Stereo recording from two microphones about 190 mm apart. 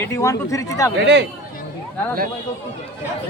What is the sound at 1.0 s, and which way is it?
Speech, 65° right (ahead or behind).